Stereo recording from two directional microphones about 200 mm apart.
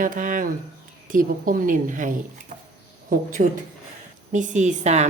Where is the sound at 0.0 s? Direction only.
40° right (ahead or behind).